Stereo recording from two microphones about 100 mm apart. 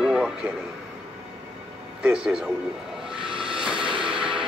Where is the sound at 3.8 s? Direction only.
55° right (ahead or behind).